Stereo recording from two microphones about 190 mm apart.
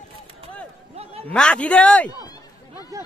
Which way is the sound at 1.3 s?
5° left (ahead or behind).